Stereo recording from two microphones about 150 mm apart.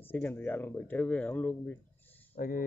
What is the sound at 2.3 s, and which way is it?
Speech, 70° left (ahead or behind).